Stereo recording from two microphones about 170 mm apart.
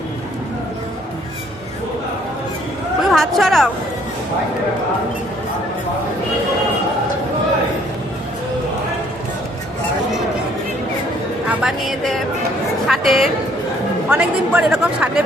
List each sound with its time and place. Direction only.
3.1 s speech: centre (ahead or behind)
11.4 s a sound: centre (ahead or behind)
12.9 s speech: centre (ahead or behind)